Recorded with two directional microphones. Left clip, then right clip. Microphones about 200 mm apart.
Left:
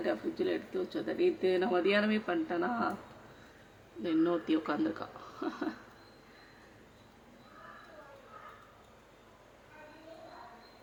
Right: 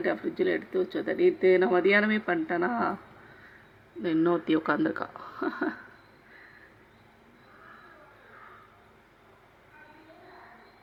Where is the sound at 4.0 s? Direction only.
15° right (ahead or behind).